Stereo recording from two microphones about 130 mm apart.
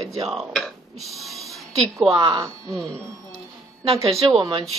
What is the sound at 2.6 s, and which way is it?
Speech, 5° left (ahead or behind).